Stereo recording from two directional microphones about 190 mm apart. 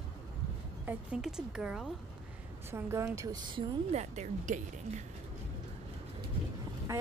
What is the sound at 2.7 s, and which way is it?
Speech, 15° right (ahead or behind).